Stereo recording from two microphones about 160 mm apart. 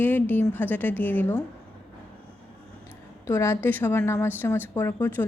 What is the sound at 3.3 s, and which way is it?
Speech, 15° left (ahead or behind).